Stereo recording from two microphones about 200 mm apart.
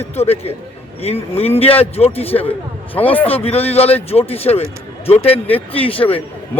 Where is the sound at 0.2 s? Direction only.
30° left (ahead or behind).